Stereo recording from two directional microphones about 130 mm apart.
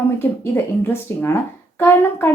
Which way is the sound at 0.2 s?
15° left (ahead or behind).